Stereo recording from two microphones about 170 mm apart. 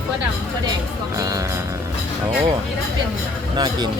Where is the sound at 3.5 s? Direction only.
25° right (ahead or behind).